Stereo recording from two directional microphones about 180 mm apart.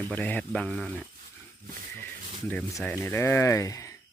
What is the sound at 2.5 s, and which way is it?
Speech, 10° left (ahead or behind).